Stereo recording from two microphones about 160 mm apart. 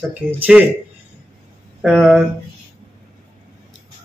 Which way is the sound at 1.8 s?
5° right (ahead or behind).